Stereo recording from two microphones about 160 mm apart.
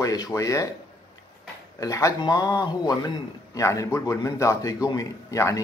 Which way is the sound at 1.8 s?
20° left (ahead or behind).